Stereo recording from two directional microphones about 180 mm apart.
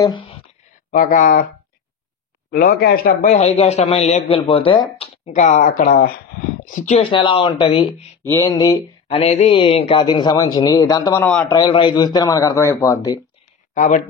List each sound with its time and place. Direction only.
0.0 s a sound: 25° left (ahead or behind)
0.9 s speech: 50° left (ahead or behind)
2.5 s speech: 60° left (ahead or behind)
3.3 s a man's voice: 35° left (ahead or behind)
6.7 s speech: 35° left (ahead or behind)
8.2 s speech: 15° left (ahead or behind)
11.1 s a man's voice: 10° left (ahead or behind)
11.5 s speech: 25° left (ahead or behind)
13.7 s speech: 45° left (ahead or behind)